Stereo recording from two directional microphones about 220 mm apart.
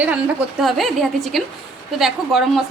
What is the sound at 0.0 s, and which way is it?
A woman's voice, 5° right (ahead or behind).